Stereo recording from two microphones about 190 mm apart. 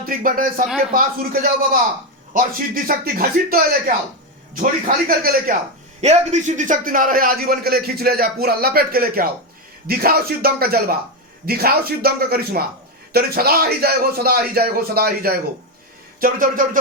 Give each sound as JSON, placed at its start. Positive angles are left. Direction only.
{"t": 0.0, "sound": "a man's voice", "side_deg": -45}
{"t": 6.0, "sound": "a man's voice", "side_deg": -35}